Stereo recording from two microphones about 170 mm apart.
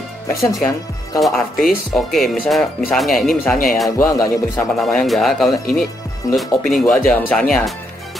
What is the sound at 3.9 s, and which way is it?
Music, 20° left (ahead or behind).